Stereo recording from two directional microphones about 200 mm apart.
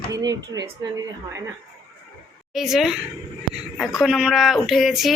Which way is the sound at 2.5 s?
Centre (ahead or behind).